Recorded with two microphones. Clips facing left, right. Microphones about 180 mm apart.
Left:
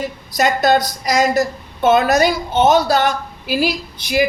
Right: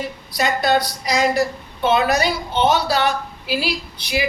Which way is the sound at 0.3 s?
45° left (ahead or behind).